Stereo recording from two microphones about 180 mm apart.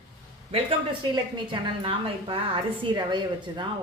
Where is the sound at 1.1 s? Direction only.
25° right (ahead or behind).